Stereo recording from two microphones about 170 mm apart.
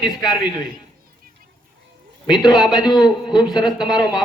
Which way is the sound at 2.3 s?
25° left (ahead or behind).